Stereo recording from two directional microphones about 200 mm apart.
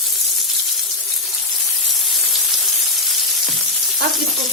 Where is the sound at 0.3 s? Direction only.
Centre (ahead or behind).